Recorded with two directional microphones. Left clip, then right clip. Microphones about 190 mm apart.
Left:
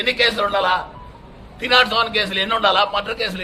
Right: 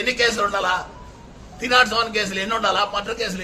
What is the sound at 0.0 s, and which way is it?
A man's voice, 15° right (ahead or behind).